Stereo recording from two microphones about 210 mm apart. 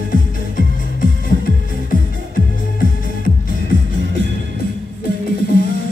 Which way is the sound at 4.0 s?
60° right (ahead or behind).